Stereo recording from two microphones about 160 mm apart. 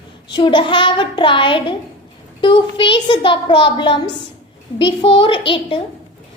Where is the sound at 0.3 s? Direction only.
30° left (ahead or behind).